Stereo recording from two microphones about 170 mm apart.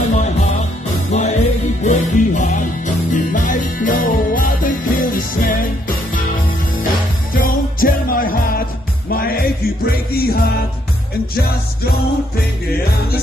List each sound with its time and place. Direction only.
0.1 s music: 40° left (ahead or behind)
7.3 s music: 55° left (ahead or behind)